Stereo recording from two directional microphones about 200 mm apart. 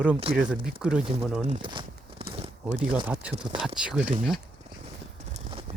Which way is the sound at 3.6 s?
5° right (ahead or behind).